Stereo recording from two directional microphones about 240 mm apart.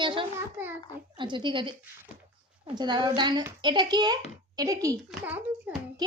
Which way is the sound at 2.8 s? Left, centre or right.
Centre.